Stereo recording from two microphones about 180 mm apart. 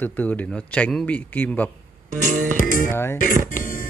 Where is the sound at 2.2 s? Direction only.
45° right (ahead or behind).